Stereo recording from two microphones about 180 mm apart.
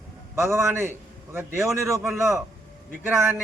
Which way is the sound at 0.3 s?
15° right (ahead or behind).